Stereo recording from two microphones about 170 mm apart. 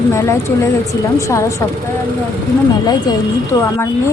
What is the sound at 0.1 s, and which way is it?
A woman's voice, 15° left (ahead or behind).